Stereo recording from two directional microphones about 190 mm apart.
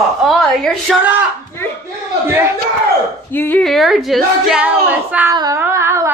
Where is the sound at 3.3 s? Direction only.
10° left (ahead or behind).